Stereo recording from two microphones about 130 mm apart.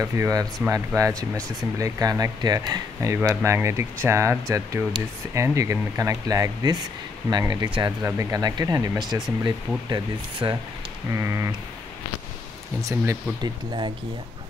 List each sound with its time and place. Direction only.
0.0 s speech: 25° right (ahead or behind)
12.8 s speech: 25° right (ahead or behind)